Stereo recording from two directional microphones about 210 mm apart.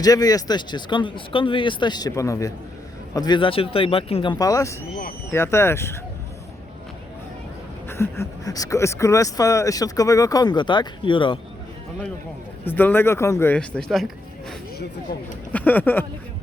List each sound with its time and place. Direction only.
0.0 s speech: 15° left (ahead or behind)
7.9 s speech: 10° left (ahead or behind)
12.6 s speech: 10° left (ahead or behind)
15.5 s speech: 10° left (ahead or behind)